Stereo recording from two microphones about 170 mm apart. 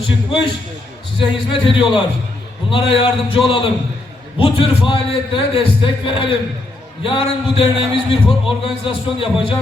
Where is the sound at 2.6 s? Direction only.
30° left (ahead or behind).